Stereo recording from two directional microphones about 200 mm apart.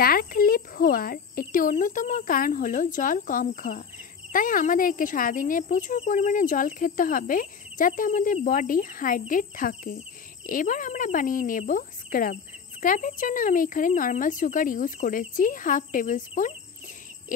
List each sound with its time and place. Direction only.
0.0 s speech: 45° left (ahead or behind)